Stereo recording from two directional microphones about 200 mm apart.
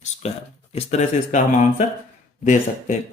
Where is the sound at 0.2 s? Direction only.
35° left (ahead or behind).